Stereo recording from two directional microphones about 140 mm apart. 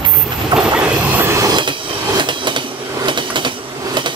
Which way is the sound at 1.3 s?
25° right (ahead or behind).